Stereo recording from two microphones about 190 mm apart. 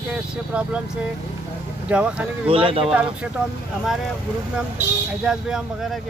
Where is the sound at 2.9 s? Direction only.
5° right (ahead or behind).